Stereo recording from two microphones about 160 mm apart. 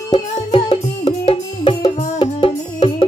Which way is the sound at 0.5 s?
35° left (ahead or behind).